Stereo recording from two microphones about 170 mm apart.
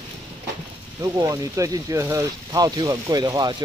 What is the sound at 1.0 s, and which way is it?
Speech, 20° right (ahead or behind).